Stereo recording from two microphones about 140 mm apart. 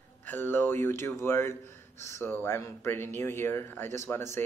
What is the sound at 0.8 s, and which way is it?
Speech, 20° left (ahead or behind).